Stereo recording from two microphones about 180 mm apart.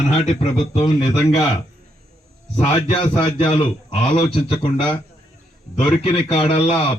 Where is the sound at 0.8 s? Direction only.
30° left (ahead or behind).